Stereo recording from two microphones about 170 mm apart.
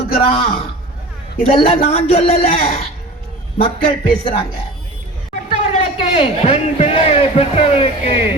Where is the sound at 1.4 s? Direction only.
40° left (ahead or behind).